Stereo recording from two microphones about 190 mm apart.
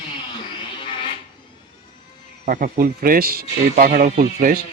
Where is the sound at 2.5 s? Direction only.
45° right (ahead or behind).